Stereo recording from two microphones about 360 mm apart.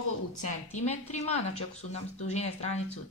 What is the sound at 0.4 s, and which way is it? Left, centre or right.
Speech, centre.